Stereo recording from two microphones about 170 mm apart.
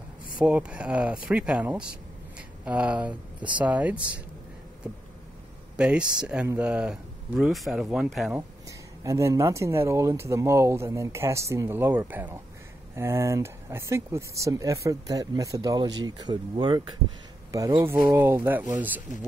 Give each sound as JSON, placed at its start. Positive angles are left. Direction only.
{"t": 0.4, "sound": "speech", "side_deg": -5}
{"t": 5.8, "sound": "speech", "side_deg": -5}
{"t": 8.4, "sound": "speech", "side_deg": -20}